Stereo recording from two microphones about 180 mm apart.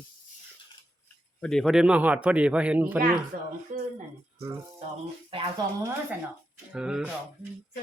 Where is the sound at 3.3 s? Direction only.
50° right (ahead or behind).